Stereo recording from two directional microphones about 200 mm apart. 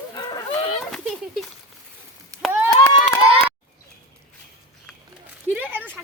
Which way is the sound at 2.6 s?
10° left (ahead or behind).